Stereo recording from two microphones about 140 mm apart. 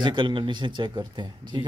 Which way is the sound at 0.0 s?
35° right (ahead or behind).